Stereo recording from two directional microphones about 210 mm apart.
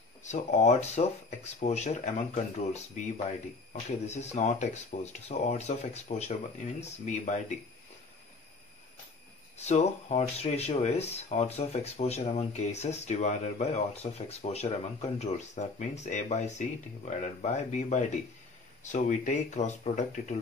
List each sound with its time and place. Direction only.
0.2 s speech: 35° left (ahead or behind)
4.0 s speech: 30° left (ahead or behind)
9.6 s speech: 30° left (ahead or behind)